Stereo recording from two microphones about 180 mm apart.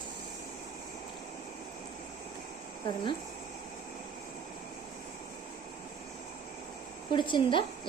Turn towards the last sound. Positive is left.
turn(degrees=25)  # may be behind; listen again after turning